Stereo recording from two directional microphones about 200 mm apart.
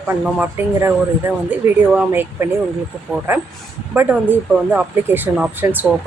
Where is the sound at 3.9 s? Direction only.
10° right (ahead or behind).